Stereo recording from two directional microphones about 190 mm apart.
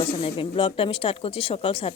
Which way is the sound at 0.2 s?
30° left (ahead or behind).